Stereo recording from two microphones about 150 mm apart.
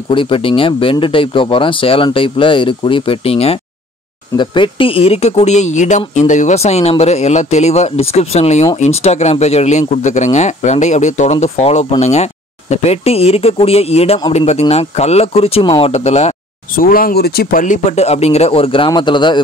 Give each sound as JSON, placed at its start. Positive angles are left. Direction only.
{"t": 0.1, "sound": "speech", "side_deg": 35}
{"t": 15.9, "sound": "speech", "side_deg": 45}
{"t": 16.7, "sound": "speech", "side_deg": 70}